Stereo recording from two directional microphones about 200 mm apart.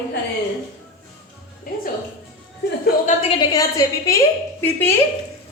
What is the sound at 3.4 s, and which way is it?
A woman's voice, 15° left (ahead or behind).